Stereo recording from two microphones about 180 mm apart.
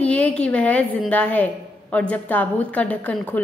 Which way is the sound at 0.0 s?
5° left (ahead or behind).